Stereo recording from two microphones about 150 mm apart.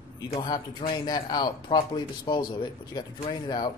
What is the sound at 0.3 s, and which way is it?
A man's voice, 25° left (ahead or behind).